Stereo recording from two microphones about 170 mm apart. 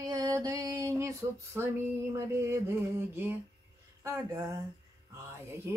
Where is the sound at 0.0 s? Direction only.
20° right (ahead or behind).